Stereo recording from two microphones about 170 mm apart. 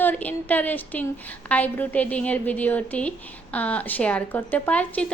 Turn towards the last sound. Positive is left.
turn(degrees=10)  # may be behind; listen again after turning